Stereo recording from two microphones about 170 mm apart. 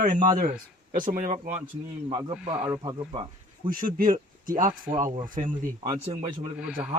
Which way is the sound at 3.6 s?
55° right (ahead or behind).